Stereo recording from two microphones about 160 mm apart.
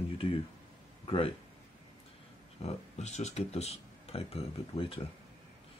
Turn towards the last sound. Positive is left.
turn(degrees=35)  # may be behind; listen again after turning